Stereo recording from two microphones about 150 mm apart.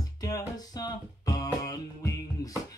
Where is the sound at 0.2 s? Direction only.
25° left (ahead or behind).